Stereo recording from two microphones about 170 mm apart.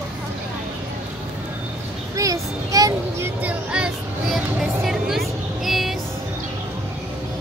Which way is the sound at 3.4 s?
5° right (ahead or behind).